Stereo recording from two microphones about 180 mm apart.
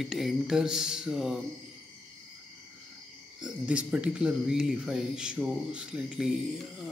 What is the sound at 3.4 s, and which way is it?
A man's voice, 5° right (ahead or behind).